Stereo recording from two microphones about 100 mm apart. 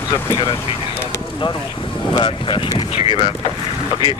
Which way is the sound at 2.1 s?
55° left (ahead or behind).